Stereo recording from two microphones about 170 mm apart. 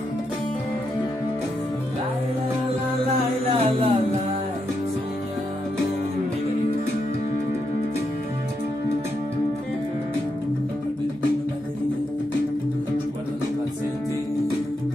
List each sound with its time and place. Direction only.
3.4 s music: 35° right (ahead or behind)